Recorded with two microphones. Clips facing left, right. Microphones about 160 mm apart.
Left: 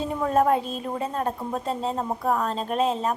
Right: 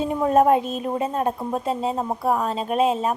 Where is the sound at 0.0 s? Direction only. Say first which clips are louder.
Right 4 dB; 20° right (ahead or behind).